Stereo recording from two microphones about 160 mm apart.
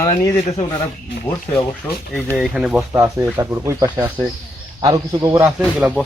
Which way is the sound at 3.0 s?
15° right (ahead or behind).